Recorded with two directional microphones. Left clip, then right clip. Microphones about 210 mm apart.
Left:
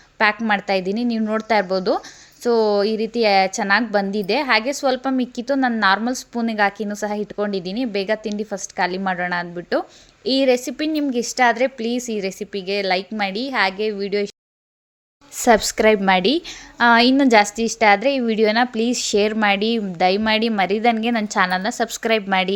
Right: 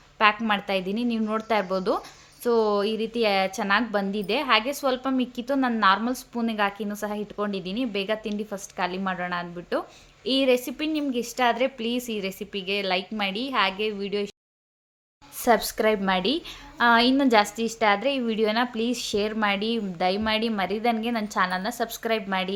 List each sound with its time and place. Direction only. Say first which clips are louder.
0.2 s a woman's voice: left 3 dB; 25° left (ahead or behind)
15.4 s a woman's voice: left 6 dB; 35° left (ahead or behind)